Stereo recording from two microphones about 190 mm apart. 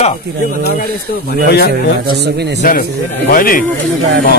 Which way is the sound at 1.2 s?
55° left (ahead or behind).